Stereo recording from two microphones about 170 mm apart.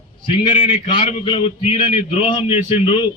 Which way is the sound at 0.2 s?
30° left (ahead or behind).